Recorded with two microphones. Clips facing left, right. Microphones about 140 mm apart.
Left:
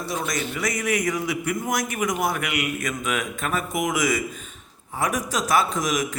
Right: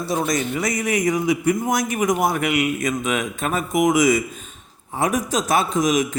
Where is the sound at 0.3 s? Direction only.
20° right (ahead or behind).